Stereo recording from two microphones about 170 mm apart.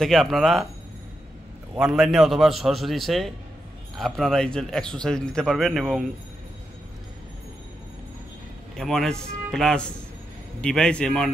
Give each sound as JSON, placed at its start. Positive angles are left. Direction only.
{"t": 0.0, "sound": "a man's voice", "side_deg": 0}
{"t": 1.8, "sound": "a man's voice", "side_deg": -5}
{"t": 8.7, "sound": "a man's voice", "side_deg": 0}